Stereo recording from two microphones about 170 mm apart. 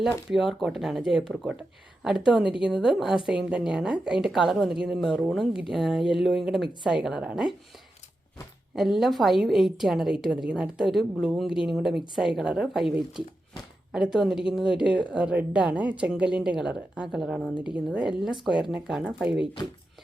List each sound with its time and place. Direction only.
0.3 s a woman's voice: centre (ahead or behind)
8.7 s a woman's voice: centre (ahead or behind)